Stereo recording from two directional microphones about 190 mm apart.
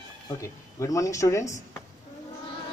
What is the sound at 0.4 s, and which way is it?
Speech, 15° left (ahead or behind).